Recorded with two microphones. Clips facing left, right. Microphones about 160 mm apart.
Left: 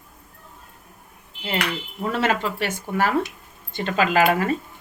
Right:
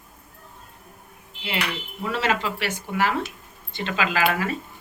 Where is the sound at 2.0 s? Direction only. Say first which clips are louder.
Left 2 dB; 50° left (ahead or behind).